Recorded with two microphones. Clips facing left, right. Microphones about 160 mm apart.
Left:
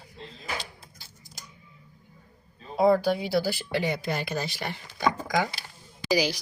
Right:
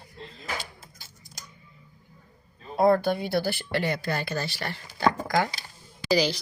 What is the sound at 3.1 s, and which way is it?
Speech, 10° left (ahead or behind).